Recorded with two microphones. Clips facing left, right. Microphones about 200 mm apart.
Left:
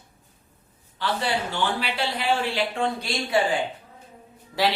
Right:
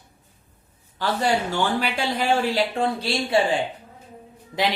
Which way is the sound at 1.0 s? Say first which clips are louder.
Right 4 dB; 45° right (ahead or behind).